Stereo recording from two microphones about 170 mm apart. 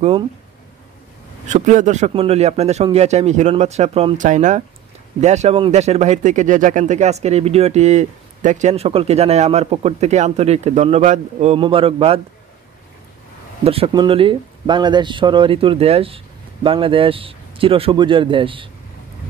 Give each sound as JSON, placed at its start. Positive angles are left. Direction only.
{"t": 1.5, "sound": "speech", "side_deg": -45}
{"t": 13.7, "sound": "speech", "side_deg": -30}